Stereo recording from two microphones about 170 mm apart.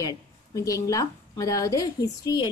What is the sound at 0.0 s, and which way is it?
A woman's voice, 20° left (ahead or behind).